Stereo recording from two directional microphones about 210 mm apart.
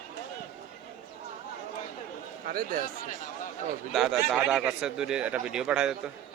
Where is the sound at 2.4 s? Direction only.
45° right (ahead or behind).